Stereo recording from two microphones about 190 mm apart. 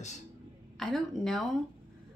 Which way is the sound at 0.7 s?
Centre (ahead or behind).